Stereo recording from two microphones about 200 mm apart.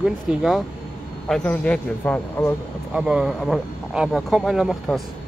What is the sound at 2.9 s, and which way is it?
Speech, 5° right (ahead or behind).